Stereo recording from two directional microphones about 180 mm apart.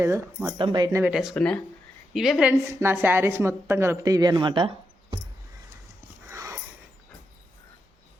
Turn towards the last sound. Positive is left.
turn(degrees=-20)  # may be behind; listen again after turning